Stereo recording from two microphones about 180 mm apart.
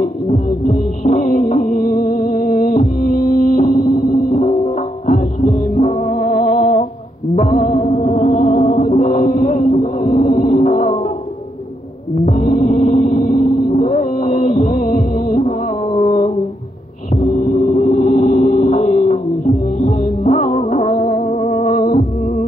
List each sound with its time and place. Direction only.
0.0 s music: 50° left (ahead or behind)
12.3 s music: 45° left (ahead or behind)
17.1 s gong: 50° left (ahead or behind)